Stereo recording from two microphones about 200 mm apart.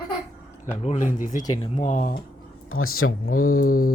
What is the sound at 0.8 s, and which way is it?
Speech, 35° left (ahead or behind).